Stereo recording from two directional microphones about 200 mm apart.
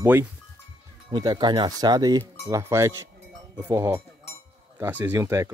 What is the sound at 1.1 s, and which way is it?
Speech, 20° right (ahead or behind).